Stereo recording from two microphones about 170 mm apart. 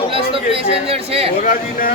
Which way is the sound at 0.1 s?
30° right (ahead or behind).